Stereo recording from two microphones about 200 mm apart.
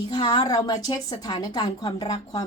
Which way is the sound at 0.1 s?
20° left (ahead or behind).